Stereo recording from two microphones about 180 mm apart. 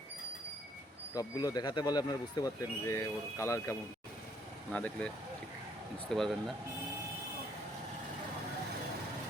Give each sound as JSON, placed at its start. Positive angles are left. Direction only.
{"t": 1.1, "sound": "speech", "side_deg": 20}